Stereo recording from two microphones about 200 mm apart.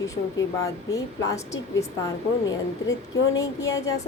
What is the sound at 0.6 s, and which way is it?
Speech, 15° left (ahead or behind).